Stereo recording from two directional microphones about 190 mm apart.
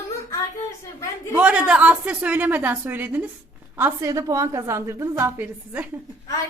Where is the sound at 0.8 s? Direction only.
15° left (ahead or behind).